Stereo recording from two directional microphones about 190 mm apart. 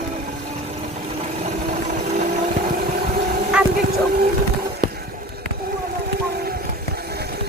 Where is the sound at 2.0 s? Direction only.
40° right (ahead or behind); by 4.2 s 55° right (ahead or behind).